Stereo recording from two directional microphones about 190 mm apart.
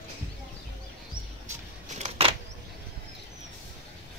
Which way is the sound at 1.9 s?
35° right (ahead or behind).